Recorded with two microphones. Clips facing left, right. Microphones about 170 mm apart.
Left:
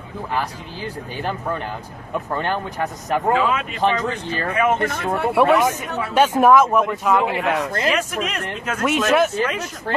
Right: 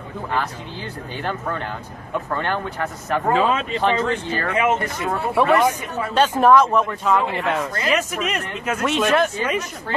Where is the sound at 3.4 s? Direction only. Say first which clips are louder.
Right 1 dB; 35° right (ahead or behind).